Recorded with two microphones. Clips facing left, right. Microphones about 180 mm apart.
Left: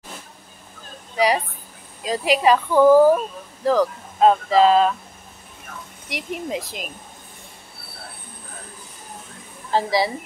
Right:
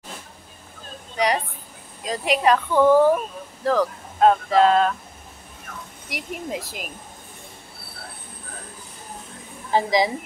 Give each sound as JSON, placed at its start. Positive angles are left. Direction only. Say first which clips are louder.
{"t": 1.1, "sound": "a sound", "louder": "left 3 dB", "side_deg": 5}
{"t": 2.0, "sound": "speech", "louder": "left 2 dB", "side_deg": 0}
{"t": 6.0, "sound": "speech", "louder": "left 3 dB", "side_deg": 0}
{"t": 9.7, "sound": "speech", "louder": "right 1 dB", "side_deg": -15}